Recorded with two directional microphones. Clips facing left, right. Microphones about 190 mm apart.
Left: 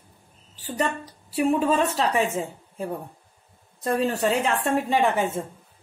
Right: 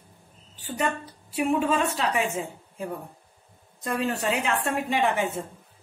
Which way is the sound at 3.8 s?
30° left (ahead or behind).